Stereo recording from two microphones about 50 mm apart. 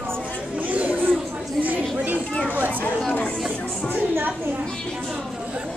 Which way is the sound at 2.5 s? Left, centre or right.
Right.